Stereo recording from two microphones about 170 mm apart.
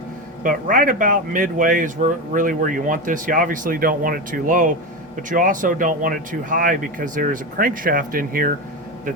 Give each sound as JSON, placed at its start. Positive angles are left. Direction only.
{"t": 0.4, "sound": "speech", "side_deg": -55}